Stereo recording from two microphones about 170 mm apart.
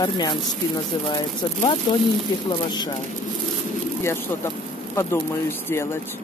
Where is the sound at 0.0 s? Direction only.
25° left (ahead or behind).